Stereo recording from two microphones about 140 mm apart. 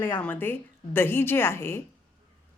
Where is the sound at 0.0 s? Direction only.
15° left (ahead or behind).